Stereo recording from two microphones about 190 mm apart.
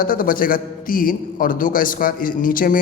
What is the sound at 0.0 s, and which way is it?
A man's voice, 45° left (ahead or behind).